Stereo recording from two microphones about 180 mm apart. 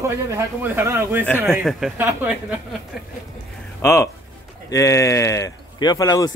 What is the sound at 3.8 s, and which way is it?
Speech, 15° left (ahead or behind).